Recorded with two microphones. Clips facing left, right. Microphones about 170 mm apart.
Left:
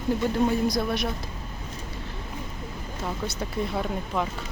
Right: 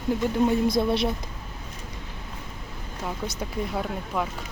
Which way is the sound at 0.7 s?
25° right (ahead or behind).